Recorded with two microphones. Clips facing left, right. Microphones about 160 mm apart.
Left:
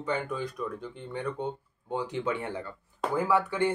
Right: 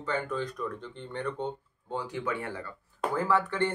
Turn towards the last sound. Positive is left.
turn(degrees=10)  # may be behind; listen again after turning